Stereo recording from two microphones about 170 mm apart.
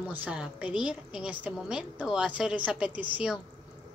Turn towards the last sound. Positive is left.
turn(degrees=-5)  # may be behind; listen again after turning